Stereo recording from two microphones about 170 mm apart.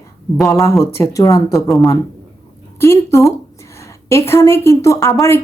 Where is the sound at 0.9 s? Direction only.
20° left (ahead or behind).